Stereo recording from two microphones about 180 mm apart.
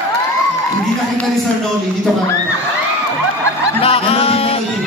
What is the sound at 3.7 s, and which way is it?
Music, 30° left (ahead or behind).